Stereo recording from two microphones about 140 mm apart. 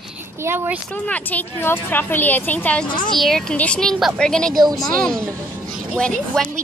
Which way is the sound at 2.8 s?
35° left (ahead or behind).